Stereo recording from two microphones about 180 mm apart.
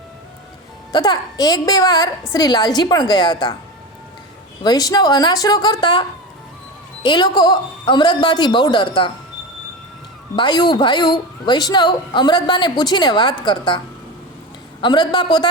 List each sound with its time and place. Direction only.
0.9 s a woman's voice: 25° left (ahead or behind)
4.6 s a woman's voice: 20° left (ahead or behind)
10.3 s a woman's voice: 25° left (ahead or behind)